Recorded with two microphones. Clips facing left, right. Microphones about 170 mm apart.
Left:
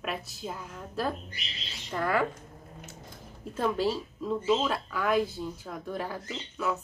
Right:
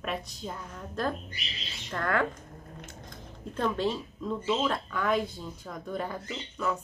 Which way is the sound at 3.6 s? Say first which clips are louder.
Left 1 dB; 5° left (ahead or behind).